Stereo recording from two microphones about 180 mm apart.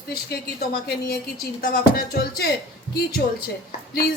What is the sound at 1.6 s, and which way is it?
Speech, 60° left (ahead or behind).